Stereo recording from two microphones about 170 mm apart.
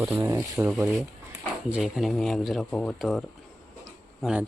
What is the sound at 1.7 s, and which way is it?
Speech, centre (ahead or behind).